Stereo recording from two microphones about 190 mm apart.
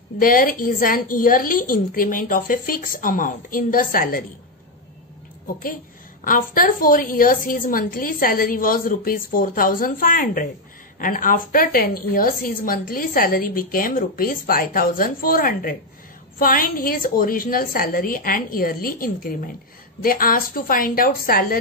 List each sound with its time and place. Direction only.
0.2 s a woman's voice: 50° left (ahead or behind)
6.2 s a woman's voice: 45° left (ahead or behind)